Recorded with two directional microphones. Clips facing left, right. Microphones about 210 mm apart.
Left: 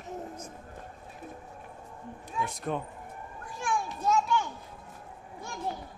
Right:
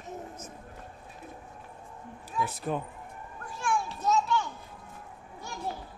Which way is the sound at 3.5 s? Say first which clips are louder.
Right 1 dB; 15° left (ahead or behind).